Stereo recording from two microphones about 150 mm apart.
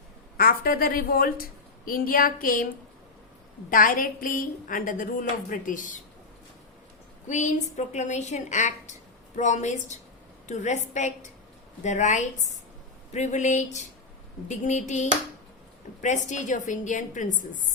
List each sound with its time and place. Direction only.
0.3 s a woman's voice: 75° left (ahead or behind)
3.7 s a woman's voice: 65° left (ahead or behind)
7.3 s a woman's voice: 50° left (ahead or behind)